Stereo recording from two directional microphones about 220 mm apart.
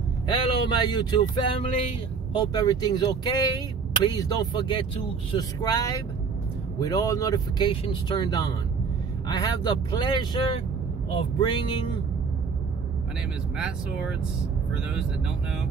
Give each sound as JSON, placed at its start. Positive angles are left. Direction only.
{"t": 0.3, "sound": "speech", "side_deg": 20}
{"t": 13.6, "sound": "speech", "side_deg": -5}